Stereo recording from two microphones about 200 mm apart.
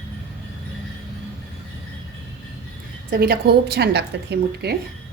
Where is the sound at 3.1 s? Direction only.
50° right (ahead or behind).